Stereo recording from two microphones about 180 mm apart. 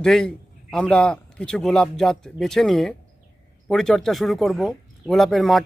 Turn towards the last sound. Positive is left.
turn(degrees=0)  # may be behind; listen again after turning